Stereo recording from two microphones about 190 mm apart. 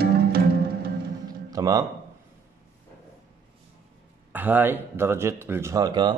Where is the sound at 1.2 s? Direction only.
20° right (ahead or behind).